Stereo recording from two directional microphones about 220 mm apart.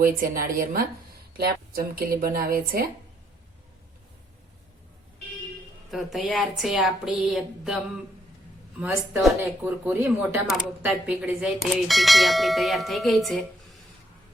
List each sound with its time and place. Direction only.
0.0 s speech: 40° right (ahead or behind)
5.9 s speech: centre (ahead or behind)
8.8 s speech: 5° right (ahead or behind)